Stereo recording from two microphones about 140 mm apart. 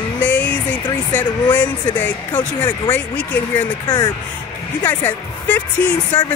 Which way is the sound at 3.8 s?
30° left (ahead or behind).